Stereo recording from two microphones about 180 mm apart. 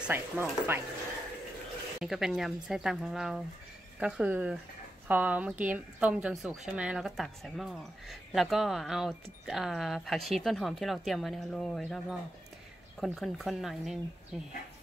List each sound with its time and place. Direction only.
0.0 s speech: 10° right (ahead or behind)
2.0 s a woman's voice: centre (ahead or behind)